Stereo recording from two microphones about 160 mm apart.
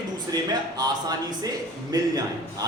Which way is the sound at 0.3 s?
25° right (ahead or behind).